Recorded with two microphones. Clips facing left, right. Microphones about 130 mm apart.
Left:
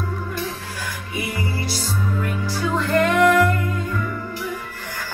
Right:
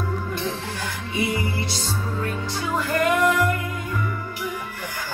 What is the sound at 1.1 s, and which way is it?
Music, 25° right (ahead or behind).